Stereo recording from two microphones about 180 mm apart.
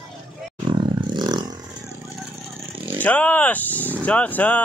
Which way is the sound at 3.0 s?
10° left (ahead or behind).